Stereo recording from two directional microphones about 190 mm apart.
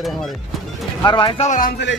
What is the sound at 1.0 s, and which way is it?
Speech, 25° left (ahead or behind).